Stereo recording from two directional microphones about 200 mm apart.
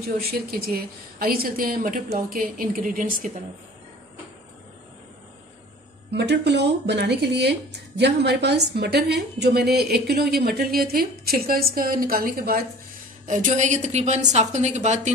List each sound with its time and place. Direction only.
0.3 s speech: 50° right (ahead or behind)
6.1 s a woman's voice: 60° right (ahead or behind); by 15.1 s 35° right (ahead or behind)